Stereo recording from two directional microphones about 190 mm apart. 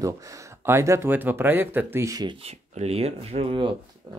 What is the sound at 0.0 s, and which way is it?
Speech, 15° right (ahead or behind).